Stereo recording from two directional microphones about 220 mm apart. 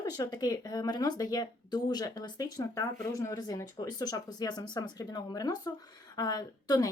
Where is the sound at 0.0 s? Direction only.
20° left (ahead or behind).